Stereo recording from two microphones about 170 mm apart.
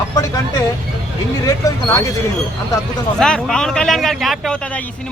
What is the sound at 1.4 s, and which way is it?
Speech, 20° left (ahead or behind).